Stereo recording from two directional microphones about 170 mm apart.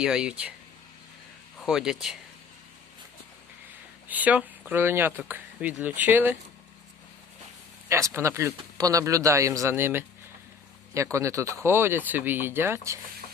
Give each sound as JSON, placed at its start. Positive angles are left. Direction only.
{"t": 0.0, "sound": "speech", "side_deg": -5}
{"t": 1.5, "sound": "speech", "side_deg": -5}
{"t": 4.1, "sound": "speech", "side_deg": -10}
{"t": 7.9, "sound": "speech", "side_deg": -15}